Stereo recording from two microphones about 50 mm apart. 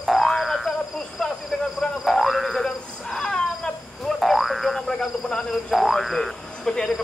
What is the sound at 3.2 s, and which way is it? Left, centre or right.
Wild animals, centre.